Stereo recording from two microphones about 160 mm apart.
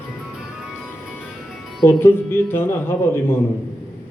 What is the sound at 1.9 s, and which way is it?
Speech, 15° left (ahead or behind).